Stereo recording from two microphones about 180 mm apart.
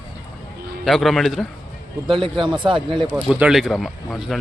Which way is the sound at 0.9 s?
Centre (ahead or behind).